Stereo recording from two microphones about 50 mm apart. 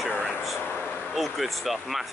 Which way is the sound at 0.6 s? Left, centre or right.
Left.